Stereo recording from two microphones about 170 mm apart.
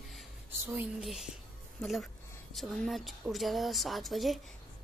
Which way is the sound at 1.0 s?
Centre (ahead or behind).